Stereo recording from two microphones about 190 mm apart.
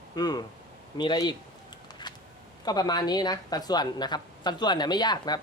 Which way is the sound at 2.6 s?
20° left (ahead or behind).